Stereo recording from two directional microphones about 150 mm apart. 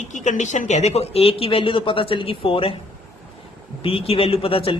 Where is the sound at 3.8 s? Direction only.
40° left (ahead or behind).